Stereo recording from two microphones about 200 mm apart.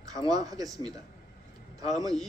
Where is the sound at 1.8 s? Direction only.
20° right (ahead or behind).